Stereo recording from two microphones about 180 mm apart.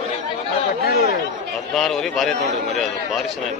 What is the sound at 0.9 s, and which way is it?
Speech, 60° left (ahead or behind).